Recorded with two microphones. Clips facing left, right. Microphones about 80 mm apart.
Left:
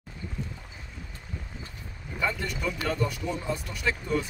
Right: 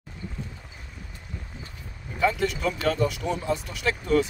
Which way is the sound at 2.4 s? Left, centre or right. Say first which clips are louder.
Right 6 dB; right.